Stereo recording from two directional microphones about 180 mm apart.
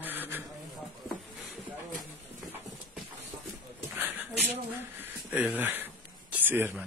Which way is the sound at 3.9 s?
10° right (ahead or behind).